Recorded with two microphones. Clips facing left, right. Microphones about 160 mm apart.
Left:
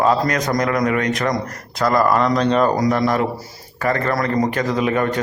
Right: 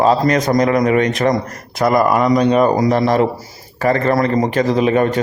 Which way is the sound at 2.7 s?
25° right (ahead or behind).